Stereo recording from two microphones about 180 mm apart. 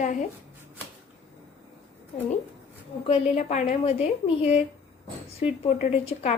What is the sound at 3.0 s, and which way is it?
A woman's voice, 35° left (ahead or behind).